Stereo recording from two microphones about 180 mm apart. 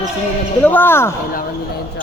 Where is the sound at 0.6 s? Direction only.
10° left (ahead or behind).